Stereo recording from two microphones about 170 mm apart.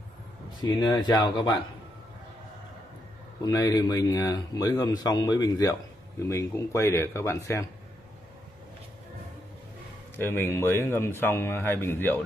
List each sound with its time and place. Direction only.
0.6 s speech: 25° left (ahead or behind)
3.4 s speech: 20° left (ahead or behind)
10.1 s speech: 10° left (ahead or behind)